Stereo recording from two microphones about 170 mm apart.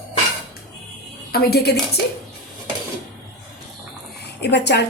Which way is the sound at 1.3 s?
65° left (ahead or behind).